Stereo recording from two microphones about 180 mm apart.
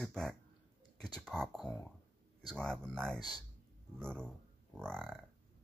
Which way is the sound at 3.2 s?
20° left (ahead or behind).